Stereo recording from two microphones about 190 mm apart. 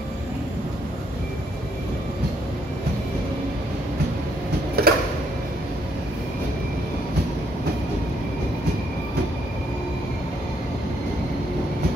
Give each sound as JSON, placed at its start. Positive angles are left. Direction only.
{"t": 4.8, "sound": "tick-tock", "side_deg": -55}